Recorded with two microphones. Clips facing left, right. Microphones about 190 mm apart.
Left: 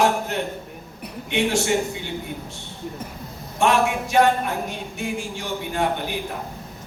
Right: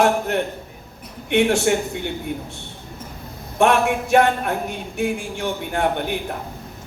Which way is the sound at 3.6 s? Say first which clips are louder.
Right 3 dB; 60° right (ahead or behind).